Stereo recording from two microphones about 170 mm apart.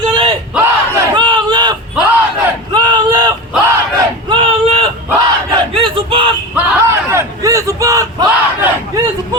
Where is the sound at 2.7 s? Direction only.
25° right (ahead or behind).